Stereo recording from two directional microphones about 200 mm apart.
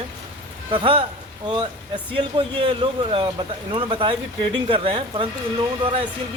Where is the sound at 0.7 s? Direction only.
25° right (ahead or behind).